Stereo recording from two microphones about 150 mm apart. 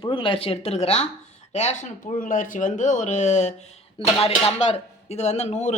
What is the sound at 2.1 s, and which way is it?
Speech, 60° left (ahead or behind).